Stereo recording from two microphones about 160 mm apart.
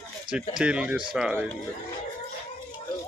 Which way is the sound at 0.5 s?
5° right (ahead or behind).